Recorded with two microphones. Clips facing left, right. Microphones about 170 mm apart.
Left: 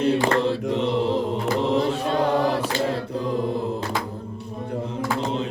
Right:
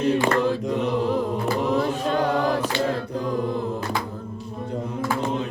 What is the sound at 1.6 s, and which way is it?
Chant, 25° left (ahead or behind).